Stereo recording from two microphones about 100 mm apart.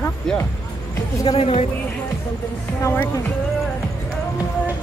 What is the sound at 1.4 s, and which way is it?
Speech, 75° left (ahead or behind).